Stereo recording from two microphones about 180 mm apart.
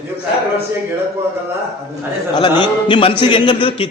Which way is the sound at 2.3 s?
25° left (ahead or behind).